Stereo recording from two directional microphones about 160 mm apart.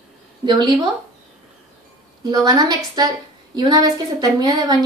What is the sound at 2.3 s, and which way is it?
A woman's voice, 25° right (ahead or behind).